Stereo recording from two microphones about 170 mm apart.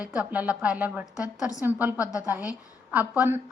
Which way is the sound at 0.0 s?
5° right (ahead or behind).